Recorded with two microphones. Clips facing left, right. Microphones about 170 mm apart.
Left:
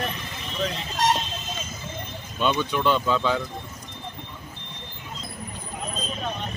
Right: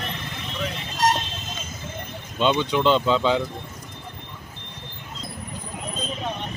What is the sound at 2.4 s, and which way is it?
Speech, 20° right (ahead or behind).